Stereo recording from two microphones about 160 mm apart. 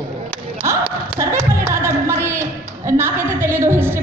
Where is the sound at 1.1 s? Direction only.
15° right (ahead or behind).